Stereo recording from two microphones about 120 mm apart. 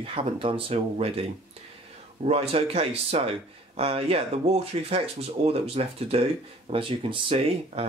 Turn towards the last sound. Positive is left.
turn(degrees=-50)  # may be behind; listen again after turning